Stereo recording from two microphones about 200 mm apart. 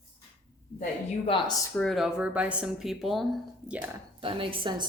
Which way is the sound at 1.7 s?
Centre (ahead or behind).